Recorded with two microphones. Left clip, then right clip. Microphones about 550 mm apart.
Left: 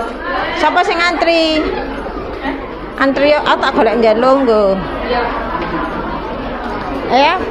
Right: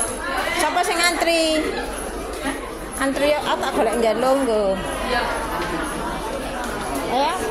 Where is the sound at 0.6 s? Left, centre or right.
Right.